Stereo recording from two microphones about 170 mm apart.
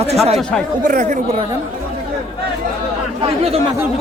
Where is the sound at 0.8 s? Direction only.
50° right (ahead or behind).